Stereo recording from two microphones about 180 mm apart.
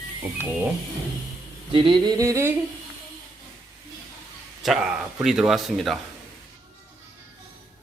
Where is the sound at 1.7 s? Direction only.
20° right (ahead or behind).